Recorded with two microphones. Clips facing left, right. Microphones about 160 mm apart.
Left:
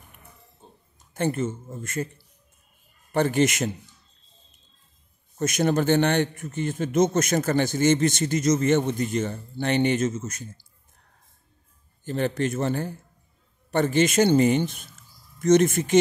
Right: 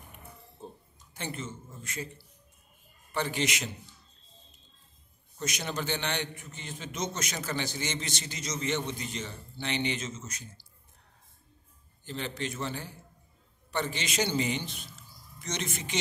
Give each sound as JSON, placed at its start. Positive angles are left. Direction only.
{"t": 1.1, "sound": "a man's voice", "side_deg": 50}
{"t": 3.1, "sound": "a man's voice", "side_deg": 50}
{"t": 5.4, "sound": "a man's voice", "side_deg": 50}
{"t": 12.0, "sound": "a man's voice", "side_deg": 50}